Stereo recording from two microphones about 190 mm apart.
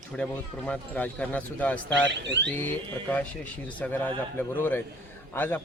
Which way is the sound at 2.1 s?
65° right (ahead or behind).